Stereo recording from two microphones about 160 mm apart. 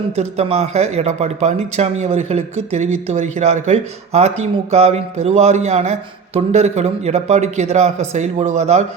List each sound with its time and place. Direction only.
0.2 s speech: 40° right (ahead or behind)